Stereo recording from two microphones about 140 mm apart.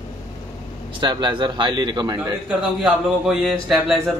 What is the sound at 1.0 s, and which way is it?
A man's voice, 35° right (ahead or behind).